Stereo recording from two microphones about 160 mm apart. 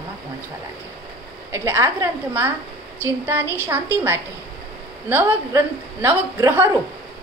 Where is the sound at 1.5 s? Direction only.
15° right (ahead or behind).